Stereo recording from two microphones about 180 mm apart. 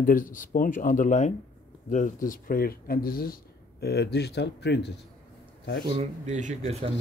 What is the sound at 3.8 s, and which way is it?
Speech, 65° left (ahead or behind).